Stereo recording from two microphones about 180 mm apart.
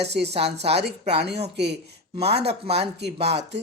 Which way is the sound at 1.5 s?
70° right (ahead or behind).